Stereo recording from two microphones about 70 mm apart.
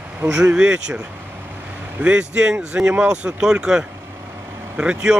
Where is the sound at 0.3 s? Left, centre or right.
Centre.